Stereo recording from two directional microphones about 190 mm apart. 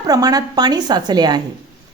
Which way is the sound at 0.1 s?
20° right (ahead or behind).